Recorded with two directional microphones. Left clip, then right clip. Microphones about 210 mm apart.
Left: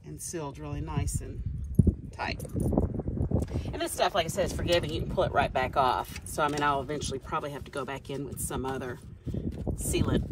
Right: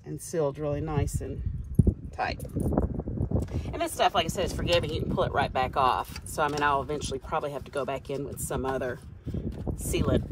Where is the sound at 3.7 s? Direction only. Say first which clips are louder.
Right 3 dB; 15° left (ahead or behind).